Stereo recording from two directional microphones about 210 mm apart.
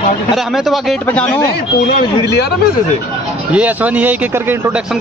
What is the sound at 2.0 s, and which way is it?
Speech, 55° left (ahead or behind).